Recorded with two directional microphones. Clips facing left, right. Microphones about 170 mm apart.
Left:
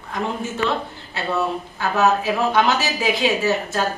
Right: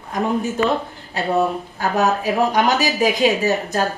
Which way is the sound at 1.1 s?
40° right (ahead or behind).